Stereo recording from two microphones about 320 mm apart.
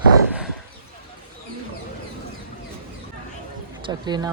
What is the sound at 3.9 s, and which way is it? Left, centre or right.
Speech, centre.